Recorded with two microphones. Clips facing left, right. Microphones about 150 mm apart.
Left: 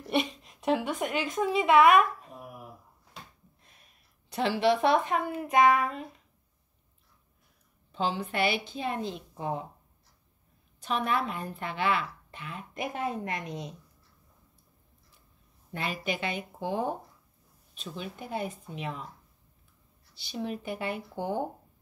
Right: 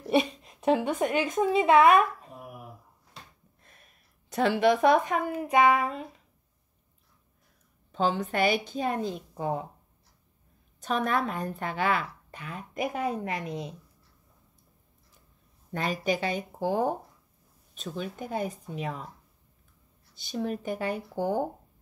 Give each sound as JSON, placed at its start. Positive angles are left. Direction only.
{"t": 0.5, "sound": "a woman's voice", "side_deg": -25}
{"t": 1.7, "sound": "speech", "side_deg": -35}
{"t": 4.3, "sound": "a woman's voice", "side_deg": -50}
{"t": 5.2, "sound": "speech", "side_deg": -15}
{"t": 5.8, "sound": "speech", "side_deg": -30}
{"t": 7.9, "sound": "a woman's voice", "side_deg": -45}
{"t": 10.8, "sound": "a woman's voice", "side_deg": -45}
{"t": 15.7, "sound": "a woman's voice", "side_deg": -45}
{"t": 20.2, "sound": "a woman's voice", "side_deg": -45}